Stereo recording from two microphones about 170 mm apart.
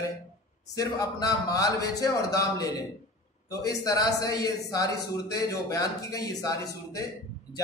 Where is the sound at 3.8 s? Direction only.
20° left (ahead or behind).